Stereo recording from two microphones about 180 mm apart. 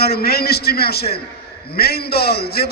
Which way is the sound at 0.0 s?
60° left (ahead or behind).